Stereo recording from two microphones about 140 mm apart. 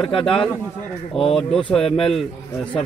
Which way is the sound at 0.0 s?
5° left (ahead or behind).